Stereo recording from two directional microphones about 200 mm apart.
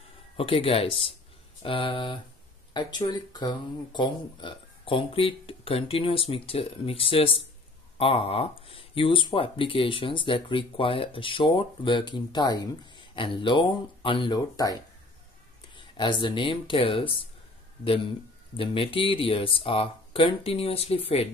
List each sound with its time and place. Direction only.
0.4 s speech: 25° left (ahead or behind)